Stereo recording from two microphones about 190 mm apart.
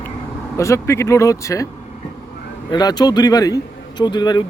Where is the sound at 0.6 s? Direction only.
15° left (ahead or behind).